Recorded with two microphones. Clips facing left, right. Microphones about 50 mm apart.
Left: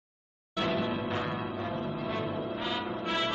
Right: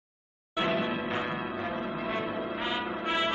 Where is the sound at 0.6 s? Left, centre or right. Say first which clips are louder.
Right 1 dB; right.